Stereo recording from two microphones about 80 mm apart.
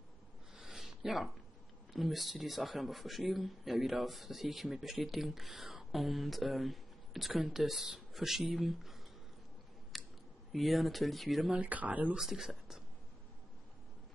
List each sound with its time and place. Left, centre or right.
0.6 s a sound: centre
2.0 s speech: centre
9.9 s a sound: centre
10.5 s speech: centre
11.5 s speech: centre
12.2 s speech: centre